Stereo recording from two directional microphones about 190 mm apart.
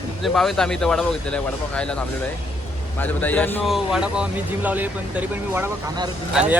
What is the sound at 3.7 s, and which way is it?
Speech, centre (ahead or behind).